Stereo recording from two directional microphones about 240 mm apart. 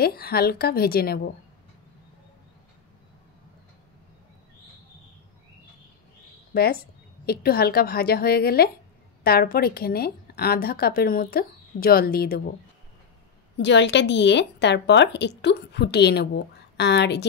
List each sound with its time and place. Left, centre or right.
0.0 s a woman's voice: left
6.5 s a woman's voice: left
13.6 s a woman's voice: left